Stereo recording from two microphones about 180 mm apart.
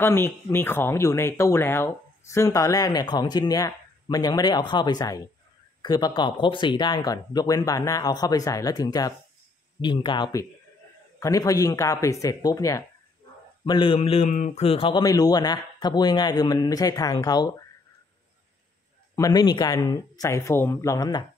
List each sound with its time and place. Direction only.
0.0 s speech: 15° left (ahead or behind)
19.1 s speech: 20° left (ahead or behind)